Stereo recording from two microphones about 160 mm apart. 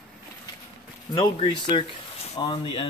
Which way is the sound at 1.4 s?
30° left (ahead or behind).